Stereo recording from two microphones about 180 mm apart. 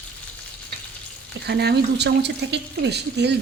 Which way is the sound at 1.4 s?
65° right (ahead or behind).